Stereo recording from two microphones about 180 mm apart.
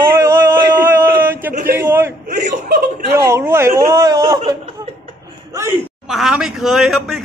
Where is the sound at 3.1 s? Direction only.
15° right (ahead or behind).